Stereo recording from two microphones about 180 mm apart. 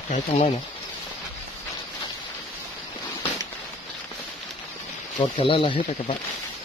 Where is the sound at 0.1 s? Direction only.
45° left (ahead or behind).